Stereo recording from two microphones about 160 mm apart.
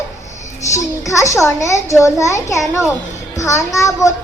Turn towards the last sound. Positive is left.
turn(degrees=20)  # may be behind; listen again after turning